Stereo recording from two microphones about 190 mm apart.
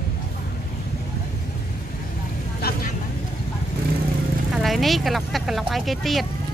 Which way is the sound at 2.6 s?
55° left (ahead or behind).